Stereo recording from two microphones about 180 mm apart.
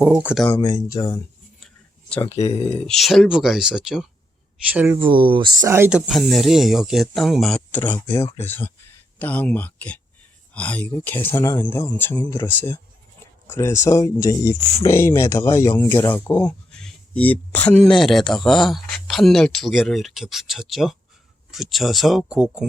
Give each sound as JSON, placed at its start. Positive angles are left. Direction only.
{"t": 0.0, "sound": "speech", "side_deg": -5}
{"t": 0.6, "sound": "speech", "side_deg": 25}
{"t": 1.6, "sound": "a sound", "side_deg": 5}
{"t": 2.3, "sound": "speech", "side_deg": 35}
{"t": 2.6, "sound": "speech", "side_deg": 5}
{"t": 4.9, "sound": "speech", "side_deg": -25}
{"t": 6.1, "sound": "speech", "side_deg": 0}